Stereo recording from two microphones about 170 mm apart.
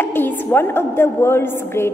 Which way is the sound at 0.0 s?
10° left (ahead or behind).